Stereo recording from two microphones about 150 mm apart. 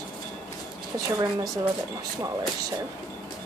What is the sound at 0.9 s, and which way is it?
Speech, 25° right (ahead or behind).